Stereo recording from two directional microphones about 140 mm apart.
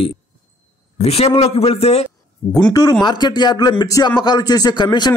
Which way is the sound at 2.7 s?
30° left (ahead or behind).